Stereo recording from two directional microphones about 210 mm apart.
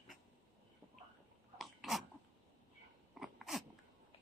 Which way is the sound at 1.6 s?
Centre (ahead or behind).